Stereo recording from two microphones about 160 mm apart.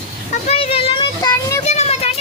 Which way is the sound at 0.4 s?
35° left (ahead or behind).